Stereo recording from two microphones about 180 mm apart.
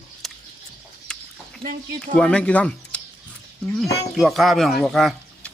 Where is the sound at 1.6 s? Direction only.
5° left (ahead or behind).